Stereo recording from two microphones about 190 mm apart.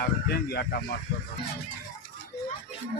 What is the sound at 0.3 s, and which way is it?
Speech, 55° left (ahead or behind).